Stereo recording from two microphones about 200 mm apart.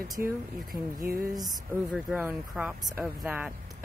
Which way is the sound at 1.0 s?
45° right (ahead or behind).